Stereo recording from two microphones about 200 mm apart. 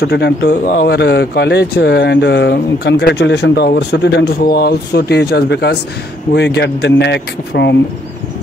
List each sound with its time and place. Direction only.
0.0 s a man's voice: 55° left (ahead or behind)